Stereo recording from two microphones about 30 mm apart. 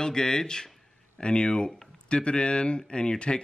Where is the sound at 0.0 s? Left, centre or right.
Left.